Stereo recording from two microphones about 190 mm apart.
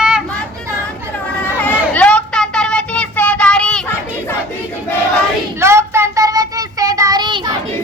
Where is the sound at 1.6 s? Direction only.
10° left (ahead or behind).